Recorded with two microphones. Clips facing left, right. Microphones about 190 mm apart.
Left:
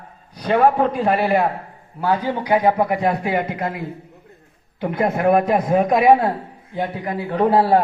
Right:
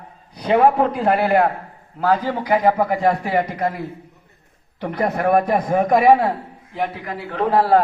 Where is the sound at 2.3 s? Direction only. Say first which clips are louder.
Even; 20° left (ahead or behind).